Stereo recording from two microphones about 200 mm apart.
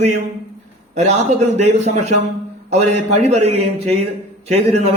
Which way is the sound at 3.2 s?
35° right (ahead or behind).